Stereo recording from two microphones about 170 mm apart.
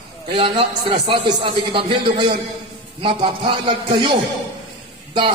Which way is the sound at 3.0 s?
30° right (ahead or behind).